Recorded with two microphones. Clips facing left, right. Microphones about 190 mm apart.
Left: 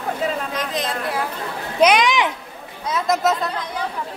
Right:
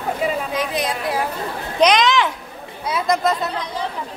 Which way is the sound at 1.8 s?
10° left (ahead or behind).